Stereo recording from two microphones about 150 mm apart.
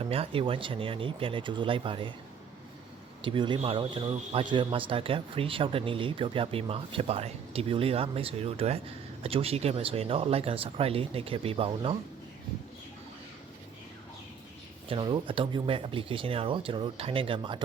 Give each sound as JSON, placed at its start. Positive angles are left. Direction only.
{"t": 0.0, "sound": "speech", "side_deg": -40}
{"t": 3.2, "sound": "speech", "side_deg": -35}
{"t": 14.8, "sound": "speech", "side_deg": -35}